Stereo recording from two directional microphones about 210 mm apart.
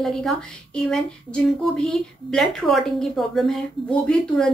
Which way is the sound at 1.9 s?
Centre (ahead or behind).